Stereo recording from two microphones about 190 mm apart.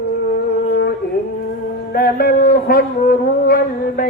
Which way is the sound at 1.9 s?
50° left (ahead or behind).